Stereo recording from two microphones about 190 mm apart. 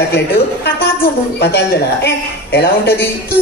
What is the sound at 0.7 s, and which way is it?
A man's voice, 55° left (ahead or behind).